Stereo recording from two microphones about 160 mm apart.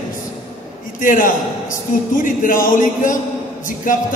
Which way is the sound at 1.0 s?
55° left (ahead or behind).